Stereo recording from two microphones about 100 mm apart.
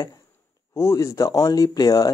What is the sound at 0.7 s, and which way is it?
Speech, 30° left (ahead or behind).